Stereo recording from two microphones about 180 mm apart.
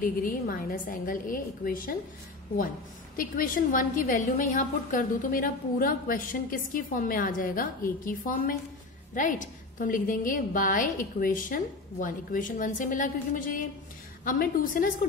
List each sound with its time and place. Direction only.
0.0 s a woman's voice: 50° left (ahead or behind)
3.2 s a woman's voice: 50° left (ahead or behind)